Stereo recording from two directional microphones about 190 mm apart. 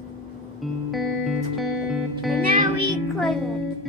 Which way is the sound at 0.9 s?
Centre (ahead or behind).